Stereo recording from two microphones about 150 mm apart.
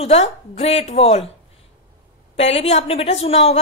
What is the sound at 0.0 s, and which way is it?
Speech, 45° left (ahead or behind).